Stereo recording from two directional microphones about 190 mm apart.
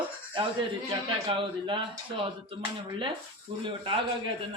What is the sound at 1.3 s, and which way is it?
Speech, 25° right (ahead or behind).